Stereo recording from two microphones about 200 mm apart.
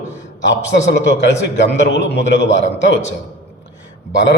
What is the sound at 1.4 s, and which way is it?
A man's voice, 60° left (ahead or behind).